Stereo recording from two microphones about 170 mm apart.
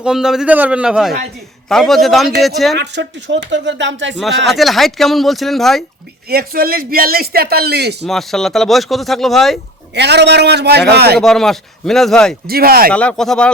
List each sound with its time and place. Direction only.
0.0 s speech: 5° right (ahead or behind)
2.7 s speech: 90° right
4.4 s speech: centre (ahead or behind)
6.2 s a man's voice: 60° right (ahead or behind)
8.0 s speech: centre (ahead or behind)
9.9 s a man's voice: 85° right
11.2 s speech: centre (ahead or behind)
12.5 s a man's voice: 60° right (ahead or behind)
12.9 s speech: 5° left (ahead or behind)